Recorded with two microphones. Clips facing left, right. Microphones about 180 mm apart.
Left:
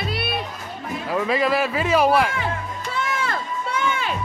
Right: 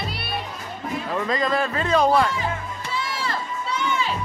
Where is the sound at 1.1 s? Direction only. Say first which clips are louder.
Left 3 dB; 10° left (ahead or behind).